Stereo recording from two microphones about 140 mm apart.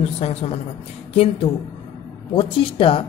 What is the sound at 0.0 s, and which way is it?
A woman's voice, 50° left (ahead or behind).